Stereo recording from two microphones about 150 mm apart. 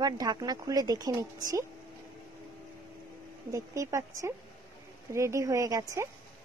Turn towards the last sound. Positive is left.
turn(degrees=-20)  # may be behind; listen again after turning